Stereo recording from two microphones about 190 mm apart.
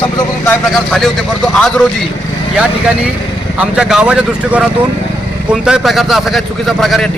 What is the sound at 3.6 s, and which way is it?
A man's voice, 5° right (ahead or behind).